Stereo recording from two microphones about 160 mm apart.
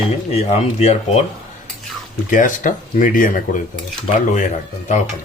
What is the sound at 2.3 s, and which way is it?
Speech, 55° left (ahead or behind).